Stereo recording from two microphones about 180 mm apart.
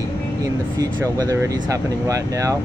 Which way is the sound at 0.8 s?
20° right (ahead or behind).